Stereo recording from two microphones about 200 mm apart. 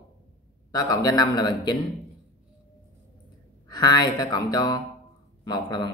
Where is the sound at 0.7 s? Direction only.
20° left (ahead or behind).